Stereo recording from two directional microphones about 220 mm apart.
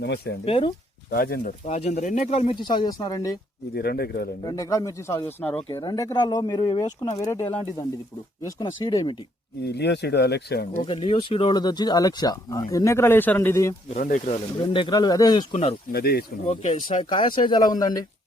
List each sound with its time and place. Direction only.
0.0 s speech: 50° left (ahead or behind)
0.4 s speech: 25° left (ahead or behind)
1.1 s speech: 40° left (ahead or behind); by 3.3 s 15° left (ahead or behind)
3.8 s speech: 45° left (ahead or behind)
4.4 s speech: 15° left (ahead or behind)
5.6 s speech: 20° left (ahead or behind)
9.6 s speech: 50° left (ahead or behind)
10.8 s speech: 25° left (ahead or behind)
13.8 s speech: 35° left (ahead or behind)
14.6 s speech: 20° left (ahead or behind)
15.9 s speech: 45° left (ahead or behind)
16.5 s speech: 30° left (ahead or behind)